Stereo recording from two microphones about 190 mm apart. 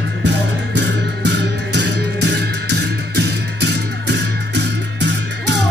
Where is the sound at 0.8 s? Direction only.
65° right (ahead or behind).